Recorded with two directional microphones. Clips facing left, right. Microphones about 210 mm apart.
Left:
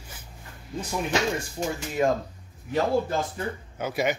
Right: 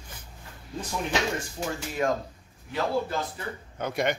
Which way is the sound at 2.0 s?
20° left (ahead or behind).